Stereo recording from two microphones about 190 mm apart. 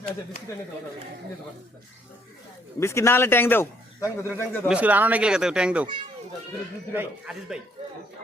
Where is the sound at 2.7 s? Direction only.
15° left (ahead or behind).